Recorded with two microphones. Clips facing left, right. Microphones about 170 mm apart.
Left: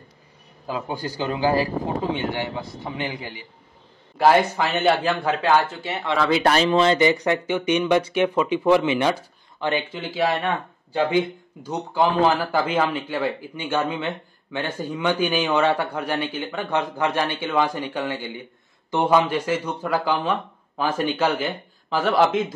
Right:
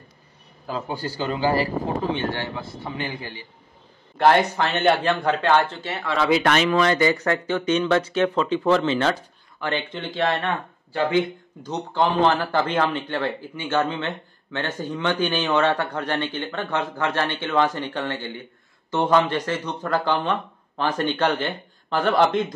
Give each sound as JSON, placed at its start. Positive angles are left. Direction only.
{"t": 0.7, "sound": "speech", "side_deg": 15}
{"t": 4.2, "sound": "speech", "side_deg": 5}
{"t": 5.9, "sound": "speech", "side_deg": 20}
{"t": 6.4, "sound": "speech", "side_deg": 30}